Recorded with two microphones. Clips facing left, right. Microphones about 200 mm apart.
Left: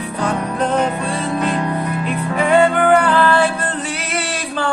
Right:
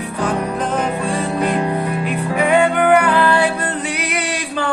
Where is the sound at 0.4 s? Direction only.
10° right (ahead or behind).